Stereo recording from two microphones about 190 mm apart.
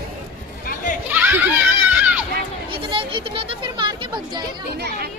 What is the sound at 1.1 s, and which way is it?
Children playing, 10° right (ahead or behind).